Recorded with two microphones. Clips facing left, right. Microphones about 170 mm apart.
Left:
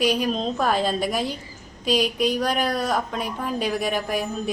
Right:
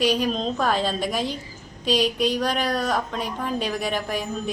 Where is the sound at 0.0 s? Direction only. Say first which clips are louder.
Even; 10° left (ahead or behind).